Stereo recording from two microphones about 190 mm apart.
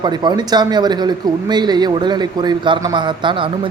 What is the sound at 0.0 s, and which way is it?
A man's voice, 20° right (ahead or behind).